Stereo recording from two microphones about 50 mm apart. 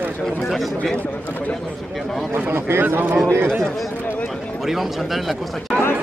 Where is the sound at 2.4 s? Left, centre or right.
Right.